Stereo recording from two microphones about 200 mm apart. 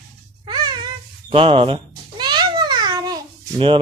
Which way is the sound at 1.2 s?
25° right (ahead or behind).